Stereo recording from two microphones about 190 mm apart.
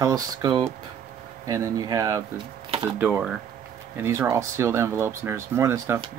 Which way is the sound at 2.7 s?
30° right (ahead or behind).